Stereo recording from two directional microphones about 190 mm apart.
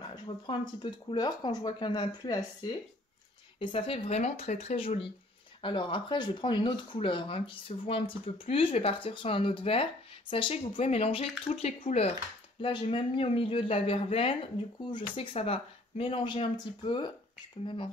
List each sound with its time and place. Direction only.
0.1 s speech: 20° left (ahead or behind)
3.5 s speech: 25° left (ahead or behind)